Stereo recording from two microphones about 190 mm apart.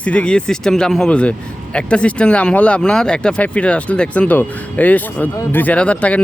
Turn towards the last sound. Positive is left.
turn(degrees=5)  # may be behind; listen again after turning